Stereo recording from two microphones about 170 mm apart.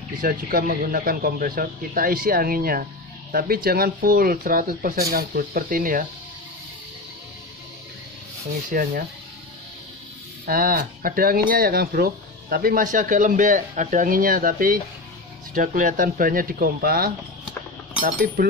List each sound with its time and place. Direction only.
0.2 s speech: 60° right (ahead or behind)
8.6 s speech: 50° right (ahead or behind)
10.4 s speech: 60° right (ahead or behind)